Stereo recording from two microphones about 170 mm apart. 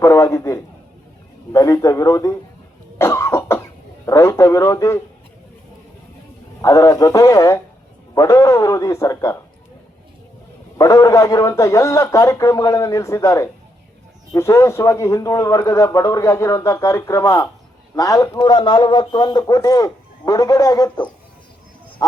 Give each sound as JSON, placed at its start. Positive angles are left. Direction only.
{"t": 0.0, "sound": "a man's voice", "side_deg": 15}
{"t": 3.0, "sound": "cough", "side_deg": 15}
{"t": 4.0, "sound": "speech", "side_deg": 15}
{"t": 6.6, "sound": "a man's voice", "side_deg": 20}
{"t": 10.8, "sound": "a man's voice", "side_deg": 20}